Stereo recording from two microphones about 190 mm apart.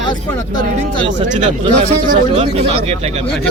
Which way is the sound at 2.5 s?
30° right (ahead or behind).